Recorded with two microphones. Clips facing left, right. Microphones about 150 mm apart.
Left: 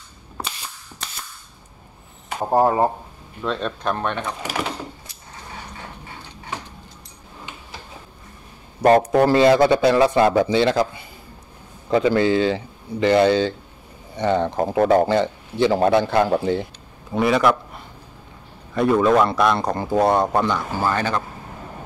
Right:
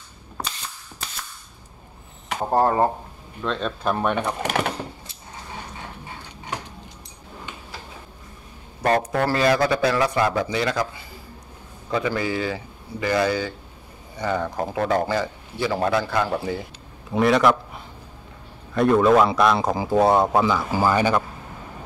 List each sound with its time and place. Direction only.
2.5 s speech: 10° left (ahead or behind)
3.4 s speech: centre (ahead or behind)
3.9 s speech: 10° right (ahead or behind)
4.4 s speech: 55° right (ahead or behind)
8.8 s speech: 25° left (ahead or behind)
11.9 s speech: 25° left (ahead or behind)
17.1 s speech: centre (ahead or behind)
18.8 s speech: centre (ahead or behind)